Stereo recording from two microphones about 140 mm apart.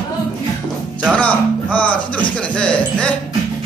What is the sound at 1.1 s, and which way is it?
Speech, 10° left (ahead or behind).